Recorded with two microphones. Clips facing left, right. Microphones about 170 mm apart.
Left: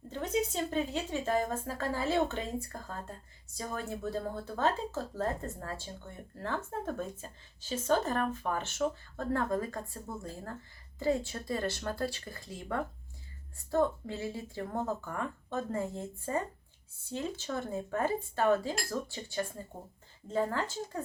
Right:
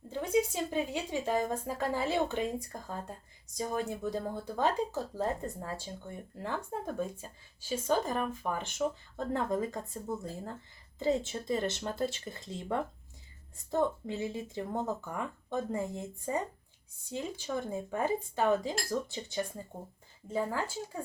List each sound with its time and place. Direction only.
0.1 s speech: 10° right (ahead or behind)
11.0 s speech: 20° right (ahead or behind)